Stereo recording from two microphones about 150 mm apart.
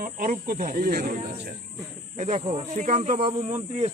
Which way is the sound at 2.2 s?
55° right (ahead or behind).